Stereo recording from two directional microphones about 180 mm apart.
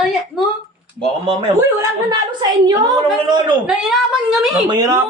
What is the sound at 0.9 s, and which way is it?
Speech, 30° right (ahead or behind).